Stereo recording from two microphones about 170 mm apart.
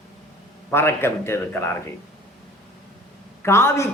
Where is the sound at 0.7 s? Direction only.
15° left (ahead or behind).